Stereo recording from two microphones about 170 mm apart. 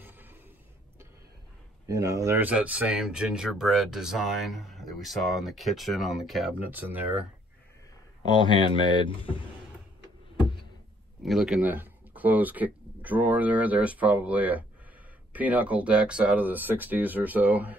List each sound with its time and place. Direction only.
0.0 s a sound: 10° right (ahead or behind)
1.9 s speech: 20° right (ahead or behind)
8.3 s speech: 30° left (ahead or behind)
11.2 s speech: 5° right (ahead or behind)